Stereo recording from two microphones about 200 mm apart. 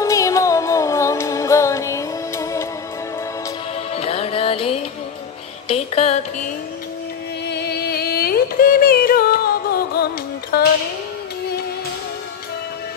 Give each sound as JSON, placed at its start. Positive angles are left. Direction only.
{"t": 0.0, "sound": "music", "side_deg": 15}
{"t": 3.9, "sound": "music", "side_deg": 30}
{"t": 7.4, "sound": "carnatic music", "side_deg": 55}
{"t": 10.5, "sound": "music", "side_deg": 50}